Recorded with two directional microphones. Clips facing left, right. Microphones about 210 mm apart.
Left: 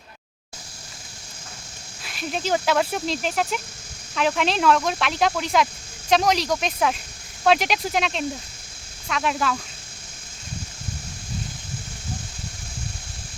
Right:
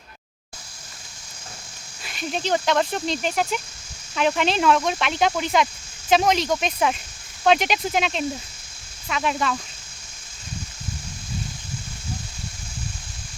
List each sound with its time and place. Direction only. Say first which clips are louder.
2.0 s speech: even; centre (ahead or behind)